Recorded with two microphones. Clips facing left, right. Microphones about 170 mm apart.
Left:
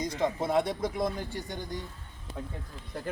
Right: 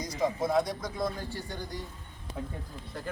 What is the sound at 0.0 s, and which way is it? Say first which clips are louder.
Speech: even; 25° left (ahead or behind).